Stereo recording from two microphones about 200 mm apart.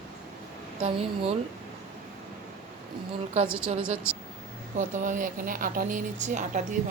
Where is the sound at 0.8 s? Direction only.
30° right (ahead or behind).